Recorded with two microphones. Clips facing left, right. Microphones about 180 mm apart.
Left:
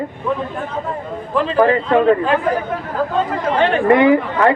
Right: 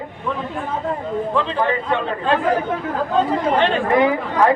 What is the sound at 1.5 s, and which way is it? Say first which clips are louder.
Speech: left 7 dB; 90° left.